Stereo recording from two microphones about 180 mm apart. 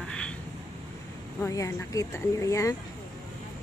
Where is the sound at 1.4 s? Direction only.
15° left (ahead or behind).